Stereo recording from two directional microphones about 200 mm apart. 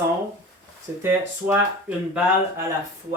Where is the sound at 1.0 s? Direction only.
10° right (ahead or behind).